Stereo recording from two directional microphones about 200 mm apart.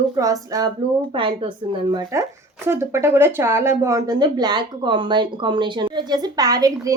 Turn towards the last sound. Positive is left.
turn(degrees=-20)  # may be behind; listen again after turning